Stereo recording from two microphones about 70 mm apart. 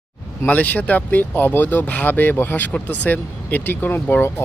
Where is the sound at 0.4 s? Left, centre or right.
Left.